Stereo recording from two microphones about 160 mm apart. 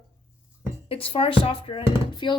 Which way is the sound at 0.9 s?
35° left (ahead or behind).